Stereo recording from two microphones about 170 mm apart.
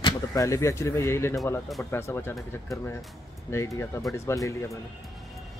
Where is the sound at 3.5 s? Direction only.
15° left (ahead or behind).